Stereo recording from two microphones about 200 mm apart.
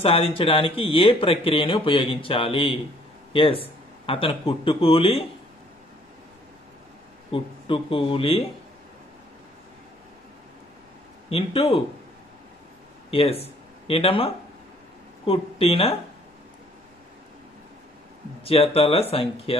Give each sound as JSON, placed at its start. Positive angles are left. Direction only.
{"t": 0.0, "sound": "speech", "side_deg": 25}
{"t": 7.2, "sound": "speech", "side_deg": 25}
{"t": 11.2, "sound": "speech", "side_deg": 30}
{"t": 13.1, "sound": "speech", "side_deg": 30}
{"t": 18.4, "sound": "speech", "side_deg": 30}